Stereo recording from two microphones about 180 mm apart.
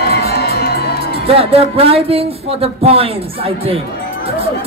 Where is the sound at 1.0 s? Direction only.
30° right (ahead or behind).